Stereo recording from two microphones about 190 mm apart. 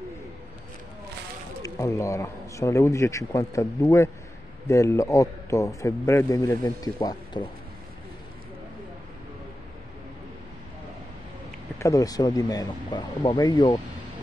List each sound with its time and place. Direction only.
1.6 s speech: 15° left (ahead or behind)
11.8 s speech: 15° left (ahead or behind)